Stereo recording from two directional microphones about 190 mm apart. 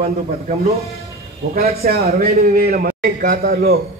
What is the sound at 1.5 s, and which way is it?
A man's voice, 55° right (ahead or behind).